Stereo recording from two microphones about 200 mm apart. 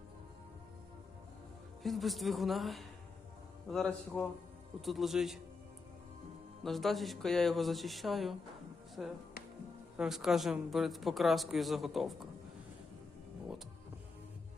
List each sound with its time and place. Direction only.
1.8 s speech: centre (ahead or behind)
6.6 s speech: centre (ahead or behind)